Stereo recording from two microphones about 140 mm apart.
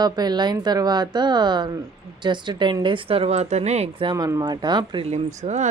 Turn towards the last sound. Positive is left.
turn(degrees=-55)  # may be behind; listen again after turning